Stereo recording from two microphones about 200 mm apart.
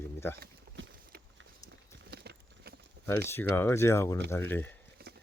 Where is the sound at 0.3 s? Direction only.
50° right (ahead or behind).